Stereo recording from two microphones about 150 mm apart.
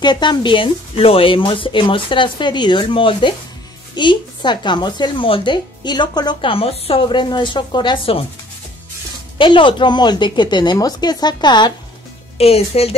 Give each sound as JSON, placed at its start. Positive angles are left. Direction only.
{"t": 0.0, "sound": "speech", "side_deg": 30}
{"t": 9.4, "sound": "speech", "side_deg": 35}
{"t": 12.4, "sound": "speech", "side_deg": 40}